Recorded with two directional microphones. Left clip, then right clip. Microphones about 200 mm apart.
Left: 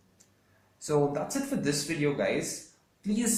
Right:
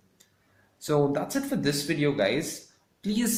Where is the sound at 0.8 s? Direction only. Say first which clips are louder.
Right 2 dB; 45° right (ahead or behind).